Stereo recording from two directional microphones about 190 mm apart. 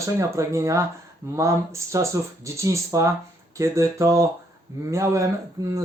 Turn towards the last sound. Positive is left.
turn(degrees=-15)  # may be behind; listen again after turning